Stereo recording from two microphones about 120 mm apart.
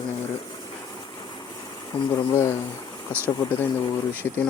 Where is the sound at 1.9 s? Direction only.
50° left (ahead or behind).